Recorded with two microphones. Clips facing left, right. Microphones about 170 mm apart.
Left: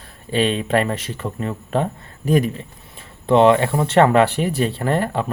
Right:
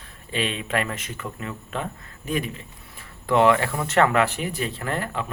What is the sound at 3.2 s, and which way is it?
A man's voice, 25° left (ahead or behind).